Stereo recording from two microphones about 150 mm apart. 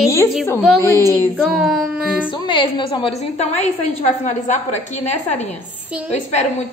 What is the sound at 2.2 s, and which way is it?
A woman's voice, 30° left (ahead or behind).